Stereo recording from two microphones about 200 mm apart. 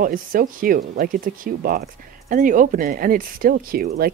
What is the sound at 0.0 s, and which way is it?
Speech, 45° right (ahead or behind).